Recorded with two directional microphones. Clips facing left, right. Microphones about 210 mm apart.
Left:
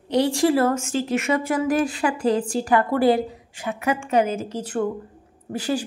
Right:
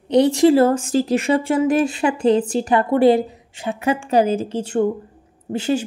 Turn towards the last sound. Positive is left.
turn(degrees=-25)  # may be behind; listen again after turning